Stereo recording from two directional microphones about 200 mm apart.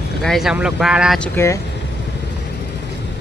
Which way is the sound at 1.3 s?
15° left (ahead or behind).